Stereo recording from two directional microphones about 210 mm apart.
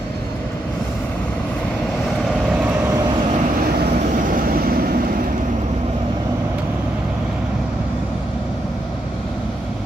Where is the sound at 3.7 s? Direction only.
40° right (ahead or behind).